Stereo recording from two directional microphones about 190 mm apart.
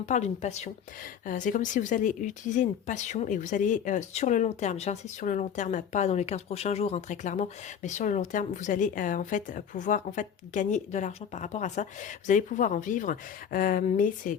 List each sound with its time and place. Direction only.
0.0 s speech: 40° left (ahead or behind)